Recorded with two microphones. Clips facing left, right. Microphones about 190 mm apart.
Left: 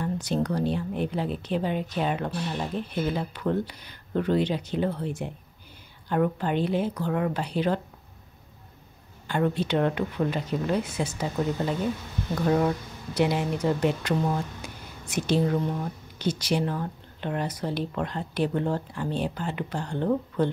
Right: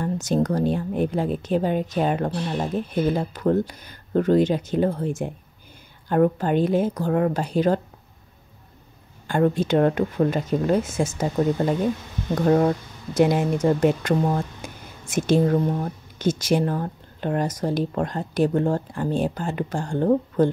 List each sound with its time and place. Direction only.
0.0 s speech: 45° right (ahead or behind)
9.3 s speech: 45° right (ahead or behind)